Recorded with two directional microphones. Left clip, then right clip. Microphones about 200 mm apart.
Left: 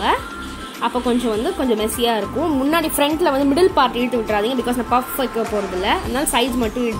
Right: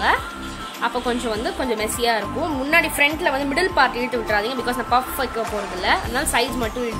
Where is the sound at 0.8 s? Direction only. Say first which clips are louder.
Left 3 dB; 5° left (ahead or behind).